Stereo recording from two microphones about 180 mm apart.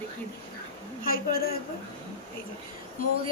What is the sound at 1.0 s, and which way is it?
Speech, 55° left (ahead or behind).